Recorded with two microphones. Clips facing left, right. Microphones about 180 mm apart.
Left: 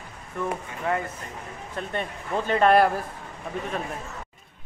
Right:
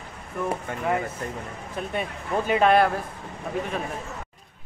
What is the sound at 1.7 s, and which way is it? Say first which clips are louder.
Speech: right 1 dB; 10° right (ahead or behind).